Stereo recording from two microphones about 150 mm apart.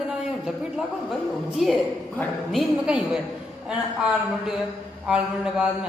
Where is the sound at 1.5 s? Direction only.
Centre (ahead or behind).